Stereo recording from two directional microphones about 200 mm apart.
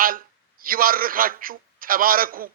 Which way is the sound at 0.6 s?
45° right (ahead or behind).